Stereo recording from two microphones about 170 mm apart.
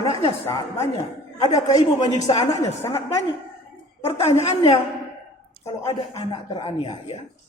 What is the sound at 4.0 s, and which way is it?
Speech, 40° left (ahead or behind).